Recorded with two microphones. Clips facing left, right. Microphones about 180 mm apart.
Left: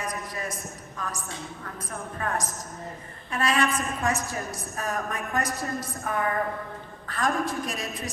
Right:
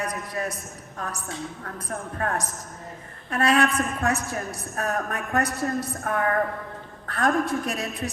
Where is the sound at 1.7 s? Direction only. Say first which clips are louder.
Right 4 dB; 65° right (ahead or behind).